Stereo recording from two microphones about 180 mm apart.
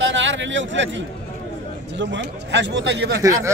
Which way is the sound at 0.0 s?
90° right.